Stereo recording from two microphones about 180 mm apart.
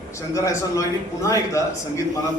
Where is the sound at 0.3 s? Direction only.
15° left (ahead or behind).